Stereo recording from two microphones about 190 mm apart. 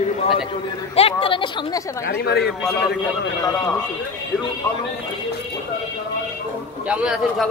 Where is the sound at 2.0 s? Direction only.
60° left (ahead or behind).